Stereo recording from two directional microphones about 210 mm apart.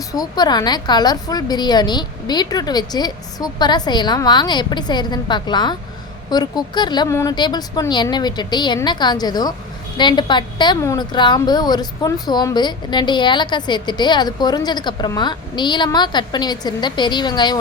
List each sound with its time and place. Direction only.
0.1 s a woman's voice: 20° left (ahead or behind)